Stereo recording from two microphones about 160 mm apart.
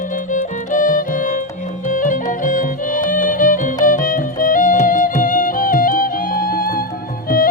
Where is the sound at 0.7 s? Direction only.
55° left (ahead or behind).